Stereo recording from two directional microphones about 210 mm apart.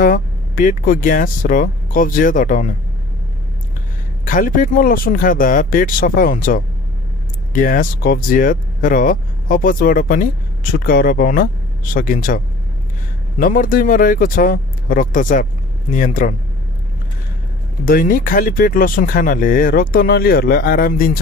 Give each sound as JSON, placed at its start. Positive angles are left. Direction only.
{"t": 0.0, "sound": "speech", "side_deg": 40}
{"t": 4.2, "sound": "speech", "side_deg": 40}
{"t": 13.4, "sound": "speech", "side_deg": 40}
{"t": 17.8, "sound": "speech", "side_deg": 40}